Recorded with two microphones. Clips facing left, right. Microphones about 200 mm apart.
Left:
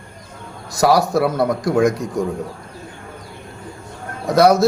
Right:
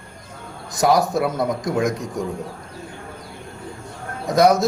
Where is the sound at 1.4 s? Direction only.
65° left (ahead or behind).